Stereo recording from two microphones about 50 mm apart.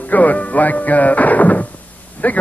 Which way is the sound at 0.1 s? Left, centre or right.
Left.